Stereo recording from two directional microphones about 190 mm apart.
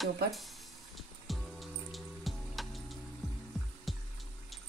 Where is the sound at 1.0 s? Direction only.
Centre (ahead or behind).